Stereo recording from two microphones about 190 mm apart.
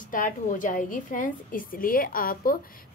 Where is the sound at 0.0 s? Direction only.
45° left (ahead or behind).